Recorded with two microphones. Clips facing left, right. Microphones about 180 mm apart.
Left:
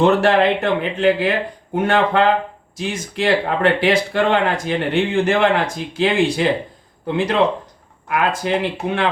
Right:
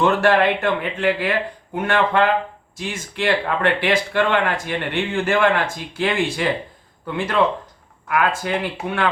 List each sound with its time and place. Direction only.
0.0 s speech: 25° left (ahead or behind)
7.1 s speech: 20° left (ahead or behind)